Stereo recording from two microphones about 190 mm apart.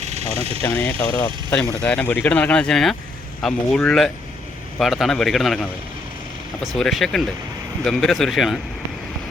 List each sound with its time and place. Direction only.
0.0 s vehicle: 35° right (ahead or behind)
0.6 s speech: 5° left (ahead or behind)
6.7 s speech: centre (ahead or behind)